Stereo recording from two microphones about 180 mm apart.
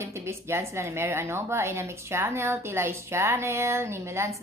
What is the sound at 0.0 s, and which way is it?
A woman's voice, 15° right (ahead or behind).